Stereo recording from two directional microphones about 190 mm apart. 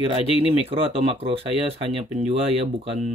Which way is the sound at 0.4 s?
30° right (ahead or behind).